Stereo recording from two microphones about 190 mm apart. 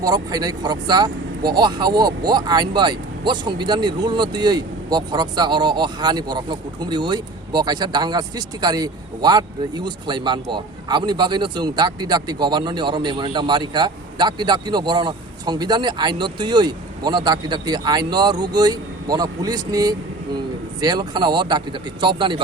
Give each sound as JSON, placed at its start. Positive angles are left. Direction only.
{"t": 0.0, "sound": "speech", "side_deg": -20}